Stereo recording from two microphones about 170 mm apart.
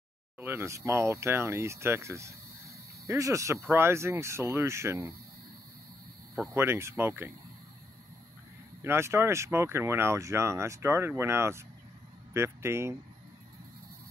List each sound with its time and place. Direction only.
0.4 s speech: 15° right (ahead or behind)
6.5 s speech: 15° right (ahead or behind)
8.8 s speech: 15° right (ahead or behind)